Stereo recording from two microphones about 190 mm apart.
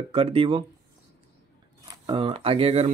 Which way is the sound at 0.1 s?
30° right (ahead or behind).